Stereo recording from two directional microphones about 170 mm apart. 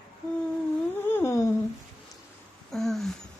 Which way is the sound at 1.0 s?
15° left (ahead or behind).